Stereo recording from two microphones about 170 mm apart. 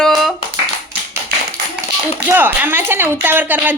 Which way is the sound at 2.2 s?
10° right (ahead or behind).